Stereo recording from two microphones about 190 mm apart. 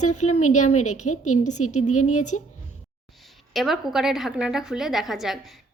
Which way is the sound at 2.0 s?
40° left (ahead or behind).